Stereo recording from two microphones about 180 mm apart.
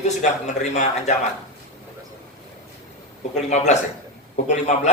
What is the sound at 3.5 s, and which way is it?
A man's voice, 40° left (ahead or behind).